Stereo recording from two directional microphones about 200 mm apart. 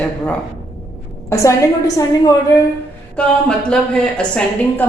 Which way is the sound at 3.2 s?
5° left (ahead or behind).